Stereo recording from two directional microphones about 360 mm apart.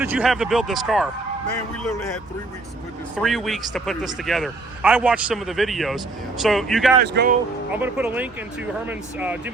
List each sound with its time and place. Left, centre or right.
0.0 s speech: centre
3.2 s speech: centre
7.0 s speech: right
7.7 s speech: centre